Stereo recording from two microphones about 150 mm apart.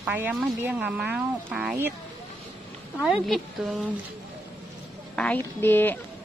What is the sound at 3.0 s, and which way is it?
Speech, centre (ahead or behind).